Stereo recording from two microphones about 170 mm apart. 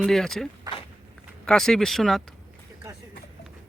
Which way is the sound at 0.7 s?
25° right (ahead or behind).